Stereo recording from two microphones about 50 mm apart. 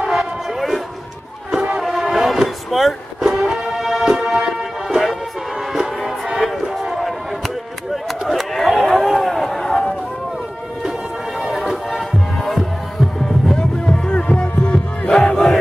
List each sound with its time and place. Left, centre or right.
0.0 s a sound: centre
1.5 s music: centre
1.8 s music: centre
5.8 s a sound: centre
11.4 s music: centre
13.6 s music: centre